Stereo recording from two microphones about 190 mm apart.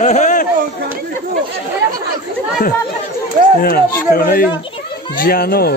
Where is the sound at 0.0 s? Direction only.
40° left (ahead or behind).